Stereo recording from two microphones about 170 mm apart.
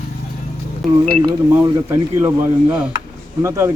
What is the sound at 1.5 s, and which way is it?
Speech, 15° right (ahead or behind).